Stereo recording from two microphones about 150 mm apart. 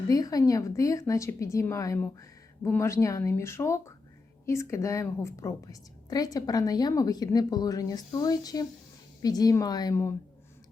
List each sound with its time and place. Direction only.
0.1 s a woman's voice: 25° left (ahead or behind)